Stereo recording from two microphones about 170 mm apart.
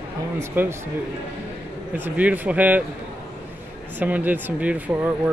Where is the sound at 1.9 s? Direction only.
10° right (ahead or behind).